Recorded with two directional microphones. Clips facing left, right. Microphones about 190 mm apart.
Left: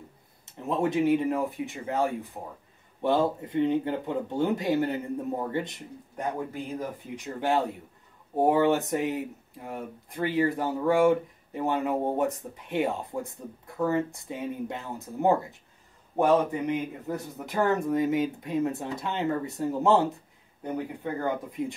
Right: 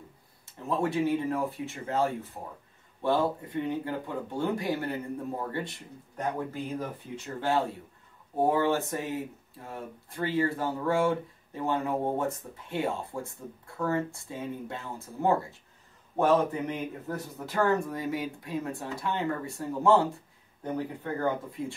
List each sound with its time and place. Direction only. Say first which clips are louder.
0.6 s speech: left 2 dB; 20° left (ahead or behind)